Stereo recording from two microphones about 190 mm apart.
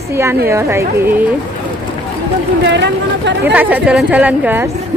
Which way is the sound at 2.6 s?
70° right (ahead or behind).